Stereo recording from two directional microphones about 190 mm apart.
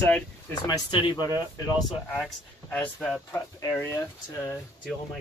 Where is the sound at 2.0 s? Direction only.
5° left (ahead or behind).